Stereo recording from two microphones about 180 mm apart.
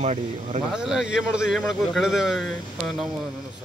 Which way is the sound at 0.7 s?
5° right (ahead or behind).